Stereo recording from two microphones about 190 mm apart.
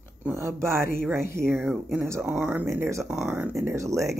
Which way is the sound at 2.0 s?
10° right (ahead or behind).